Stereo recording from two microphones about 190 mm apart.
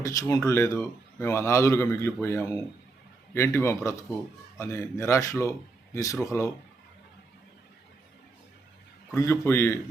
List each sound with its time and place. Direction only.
0.0 s a man's voice: 20° left (ahead or behind)
9.1 s a man's voice: 15° left (ahead or behind)